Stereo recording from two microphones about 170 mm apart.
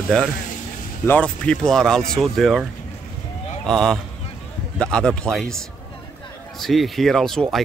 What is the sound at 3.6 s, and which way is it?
Speech, 5° left (ahead or behind).